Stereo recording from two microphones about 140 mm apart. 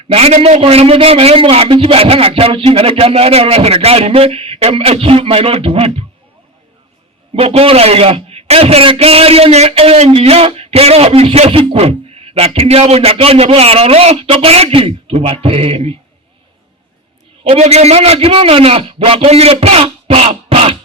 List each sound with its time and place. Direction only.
0.1 s a man's voice: 45° right (ahead or behind)
7.3 s a man's voice: 45° right (ahead or behind)
17.5 s a man's voice: 50° right (ahead or behind)